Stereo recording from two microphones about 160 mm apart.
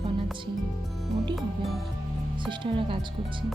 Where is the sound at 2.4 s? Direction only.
30° right (ahead or behind).